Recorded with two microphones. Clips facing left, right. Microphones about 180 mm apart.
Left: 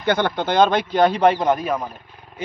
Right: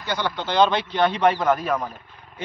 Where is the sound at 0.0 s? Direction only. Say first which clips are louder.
Left 7 dB; 55° left (ahead or behind); by 1.4 s 40° left (ahead or behind).